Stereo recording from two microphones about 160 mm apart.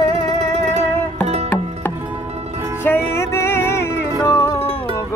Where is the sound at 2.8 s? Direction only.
15° left (ahead or behind).